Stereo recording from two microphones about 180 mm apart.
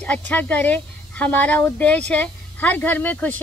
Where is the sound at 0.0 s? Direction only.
5° left (ahead or behind).